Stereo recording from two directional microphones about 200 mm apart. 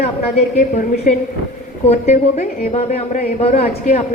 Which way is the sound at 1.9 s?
35° left (ahead or behind).